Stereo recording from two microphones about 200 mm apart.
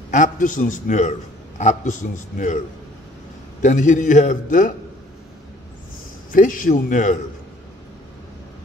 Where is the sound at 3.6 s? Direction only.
40° left (ahead or behind).